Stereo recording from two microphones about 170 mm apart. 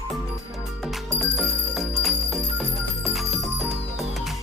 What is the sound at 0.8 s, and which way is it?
Music, centre (ahead or behind).